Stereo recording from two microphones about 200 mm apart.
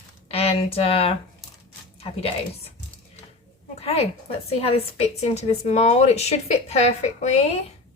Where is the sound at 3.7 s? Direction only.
30° left (ahead or behind).